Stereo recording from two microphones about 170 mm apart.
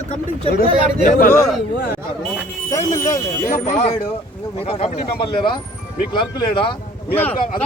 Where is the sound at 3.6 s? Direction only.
40° left (ahead or behind).